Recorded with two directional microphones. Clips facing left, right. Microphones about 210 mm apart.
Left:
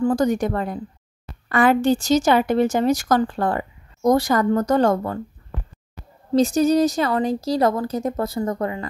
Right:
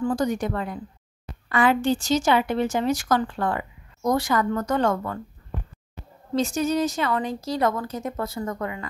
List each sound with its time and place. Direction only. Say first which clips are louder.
0.0 s a woman's voice: left 5 dB; 45° left (ahead or behind)
6.3 s a woman's voice: left 6 dB; 35° left (ahead or behind)